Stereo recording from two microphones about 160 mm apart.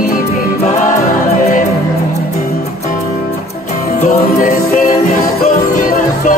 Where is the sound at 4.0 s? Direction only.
50° left (ahead or behind).